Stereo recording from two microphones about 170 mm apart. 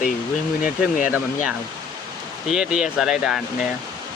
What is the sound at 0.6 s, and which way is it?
Speech, 50° left (ahead or behind).